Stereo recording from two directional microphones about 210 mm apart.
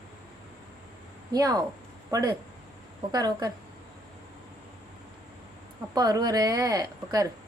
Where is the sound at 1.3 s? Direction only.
20° right (ahead or behind).